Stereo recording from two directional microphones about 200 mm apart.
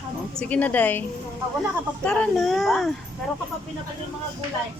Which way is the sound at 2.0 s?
5° left (ahead or behind).